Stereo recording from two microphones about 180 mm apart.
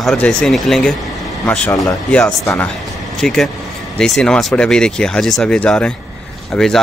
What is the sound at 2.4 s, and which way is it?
Speech, 15° left (ahead or behind).